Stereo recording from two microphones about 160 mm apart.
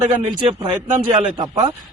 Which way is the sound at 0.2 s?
35° right (ahead or behind).